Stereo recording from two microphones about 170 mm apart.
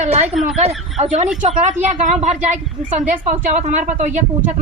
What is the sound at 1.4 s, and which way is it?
A woman's voice, 45° right (ahead or behind).